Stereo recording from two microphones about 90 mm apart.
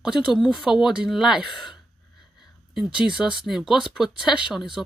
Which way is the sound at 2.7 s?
10° right (ahead or behind).